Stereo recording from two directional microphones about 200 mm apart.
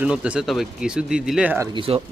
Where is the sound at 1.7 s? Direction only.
25° right (ahead or behind).